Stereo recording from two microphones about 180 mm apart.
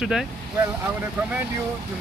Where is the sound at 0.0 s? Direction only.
Centre (ahead or behind).